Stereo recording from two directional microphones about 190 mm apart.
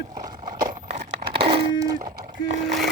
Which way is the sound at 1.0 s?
60° right (ahead or behind).